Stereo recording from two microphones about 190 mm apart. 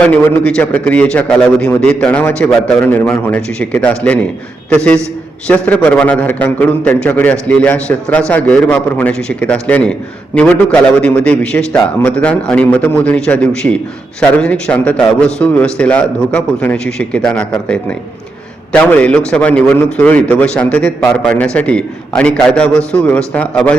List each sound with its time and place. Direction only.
0.0 s a man's voice: 5° left (ahead or behind)